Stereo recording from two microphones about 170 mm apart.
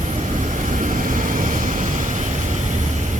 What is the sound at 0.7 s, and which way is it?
Vehicle, 50° right (ahead or behind).